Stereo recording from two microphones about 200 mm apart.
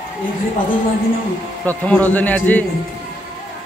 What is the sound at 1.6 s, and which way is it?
A man's voice, 10° left (ahead or behind).